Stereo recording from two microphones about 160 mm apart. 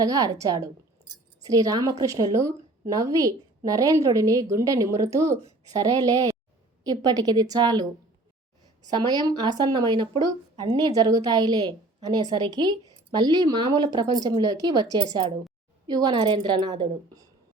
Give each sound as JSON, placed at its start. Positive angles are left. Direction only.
{"t": 0.0, "sound": "a woman's voice", "side_deg": -20}
{"t": 8.9, "sound": "a woman's voice", "side_deg": -25}